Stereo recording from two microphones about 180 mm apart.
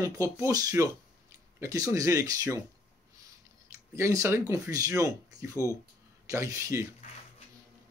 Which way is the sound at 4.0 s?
15° right (ahead or behind).